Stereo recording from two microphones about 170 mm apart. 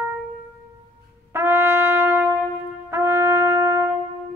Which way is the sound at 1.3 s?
15° right (ahead or behind).